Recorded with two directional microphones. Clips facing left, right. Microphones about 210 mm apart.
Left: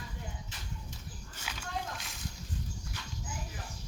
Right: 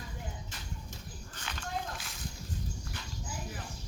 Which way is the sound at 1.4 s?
5° left (ahead or behind).